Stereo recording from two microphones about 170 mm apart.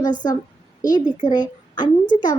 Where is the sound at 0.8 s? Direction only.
25° left (ahead or behind).